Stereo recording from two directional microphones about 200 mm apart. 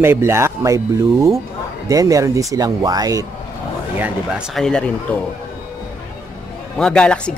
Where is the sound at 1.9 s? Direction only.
15° right (ahead or behind).